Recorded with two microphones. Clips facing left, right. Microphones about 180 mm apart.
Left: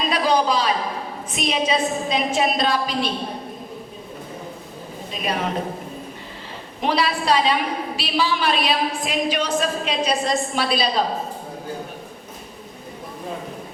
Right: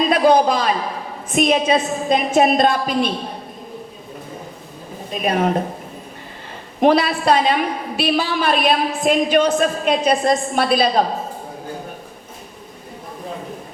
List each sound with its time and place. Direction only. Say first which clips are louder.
0.1 s a sound: right 4 dB; 50° right (ahead or behind)
1.3 s a woman's voice: right 6 dB; 50° right (ahead or behind)
5.1 s a woman's voice: right 6 dB; 50° right (ahead or behind)
6.8 s a woman's voice: right 6 dB; 50° right (ahead or behind)